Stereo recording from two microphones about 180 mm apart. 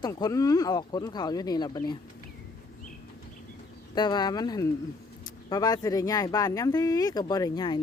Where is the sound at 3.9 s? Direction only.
25° left (ahead or behind).